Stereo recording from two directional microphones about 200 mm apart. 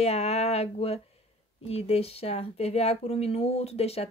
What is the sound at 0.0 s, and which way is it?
Speech, 35° left (ahead or behind).